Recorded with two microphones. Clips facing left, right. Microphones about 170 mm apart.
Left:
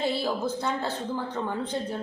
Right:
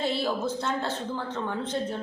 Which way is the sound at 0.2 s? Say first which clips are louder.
Even; 10° left (ahead or behind).